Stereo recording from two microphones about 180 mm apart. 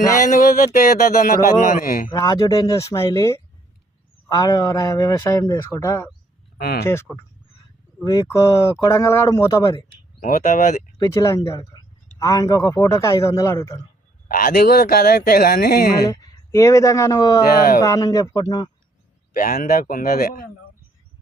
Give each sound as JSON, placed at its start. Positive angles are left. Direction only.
{"t": 0.1, "sound": "speech", "side_deg": 45}
{"t": 2.0, "sound": "speech", "side_deg": 20}
{"t": 6.6, "sound": "speech", "side_deg": 55}
{"t": 6.8, "sound": "a man's voice", "side_deg": 15}
{"t": 10.2, "sound": "speech", "side_deg": 50}
{"t": 10.9, "sound": "a man's voice", "side_deg": 20}
{"t": 14.3, "sound": "speech", "side_deg": 55}
{"t": 16.0, "sound": "speech", "side_deg": 20}
{"t": 17.5, "sound": "speech", "side_deg": 55}
{"t": 17.7, "sound": "speech", "side_deg": 20}
{"t": 19.3, "sound": "speech", "side_deg": 50}